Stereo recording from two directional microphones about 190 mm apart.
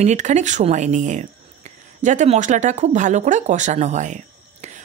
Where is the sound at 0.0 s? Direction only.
40° right (ahead or behind).